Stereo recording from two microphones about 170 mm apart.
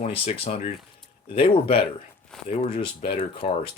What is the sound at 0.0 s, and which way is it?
Speech, 35° left (ahead or behind).